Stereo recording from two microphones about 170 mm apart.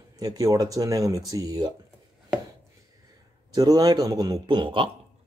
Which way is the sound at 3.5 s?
25° right (ahead or behind).